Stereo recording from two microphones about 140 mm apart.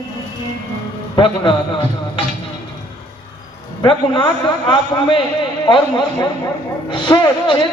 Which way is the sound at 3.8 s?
35° left (ahead or behind).